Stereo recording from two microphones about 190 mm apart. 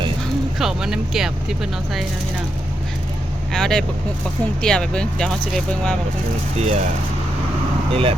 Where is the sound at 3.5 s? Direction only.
5° left (ahead or behind).